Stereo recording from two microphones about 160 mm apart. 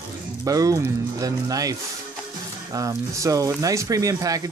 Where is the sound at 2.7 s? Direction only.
20° right (ahead or behind).